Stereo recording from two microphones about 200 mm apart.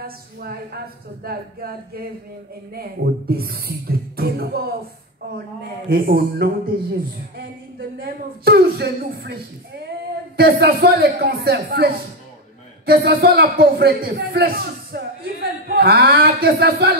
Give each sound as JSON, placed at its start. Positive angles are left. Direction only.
{"t": 0.0, "sound": "a man's voice", "side_deg": -50}
{"t": 4.2, "sound": "beatboxing", "side_deg": -50}
{"t": 5.9, "sound": "a man's voice", "side_deg": -45}
{"t": 8.0, "sound": "a man's voice", "side_deg": -50}